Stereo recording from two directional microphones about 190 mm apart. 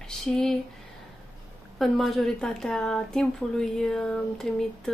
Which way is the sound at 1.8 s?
Centre (ahead or behind).